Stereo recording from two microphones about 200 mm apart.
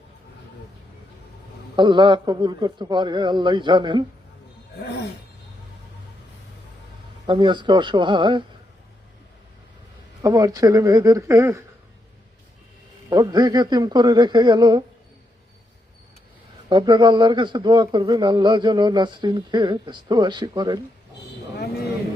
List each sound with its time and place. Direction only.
1.7 s a man's voice: 25° right (ahead or behind)
7.3 s a man's voice: 25° right (ahead or behind)
10.2 s speech: 15° right (ahead or behind)
13.1 s a man's voice: 20° right (ahead or behind)
16.6 s a man's voice: 20° right (ahead or behind)